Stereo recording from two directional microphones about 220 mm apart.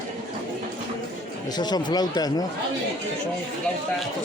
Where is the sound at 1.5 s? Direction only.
20° left (ahead or behind).